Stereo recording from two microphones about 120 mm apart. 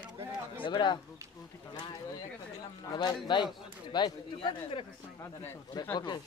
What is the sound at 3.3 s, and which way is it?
Speech, 40° left (ahead or behind).